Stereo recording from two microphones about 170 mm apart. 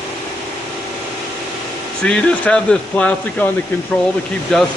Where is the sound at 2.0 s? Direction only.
5° left (ahead or behind).